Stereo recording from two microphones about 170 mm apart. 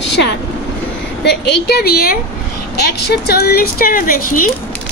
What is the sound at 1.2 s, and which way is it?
A woman's voice, 80° left.